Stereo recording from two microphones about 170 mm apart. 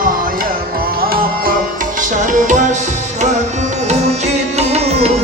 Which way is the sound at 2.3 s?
45° right (ahead or behind).